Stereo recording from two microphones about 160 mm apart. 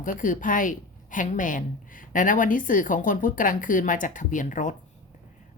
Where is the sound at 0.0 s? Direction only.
55° left (ahead or behind).